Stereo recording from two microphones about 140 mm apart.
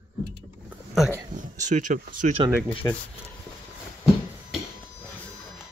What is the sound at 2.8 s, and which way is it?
Speech, 25° left (ahead or behind).